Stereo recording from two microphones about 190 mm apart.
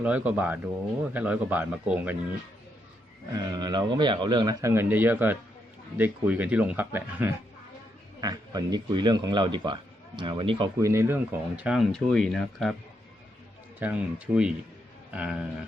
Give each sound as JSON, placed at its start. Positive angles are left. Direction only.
{"t": 0.0, "sound": "speech", "side_deg": -5}
{"t": 3.3, "sound": "speech", "side_deg": -20}
{"t": 10.8, "sound": "speech", "side_deg": -15}
{"t": 13.7, "sound": "speech", "side_deg": -5}